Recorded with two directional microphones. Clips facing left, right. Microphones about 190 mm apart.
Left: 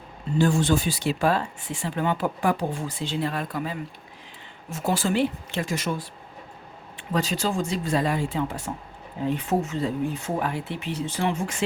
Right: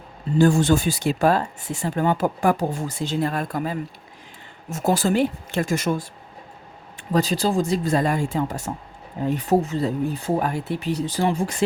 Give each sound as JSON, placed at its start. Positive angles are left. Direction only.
{"t": 0.3, "sound": "speech", "side_deg": -45}
{"t": 7.1, "sound": "speech", "side_deg": -35}